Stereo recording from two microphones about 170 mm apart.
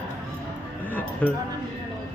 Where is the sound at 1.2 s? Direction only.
10° left (ahead or behind).